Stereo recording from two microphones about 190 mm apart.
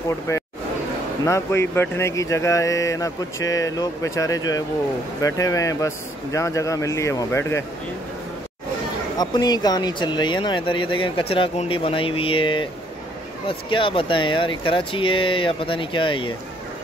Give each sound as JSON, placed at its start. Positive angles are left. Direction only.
{"t": 0.3, "sound": "speech", "side_deg": 15}
{"t": 9.2, "sound": "speech", "side_deg": 20}